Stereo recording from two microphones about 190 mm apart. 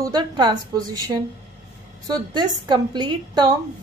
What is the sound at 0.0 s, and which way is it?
A woman's voice, 20° right (ahead or behind).